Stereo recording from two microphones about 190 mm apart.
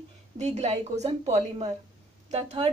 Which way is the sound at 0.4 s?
35° right (ahead or behind).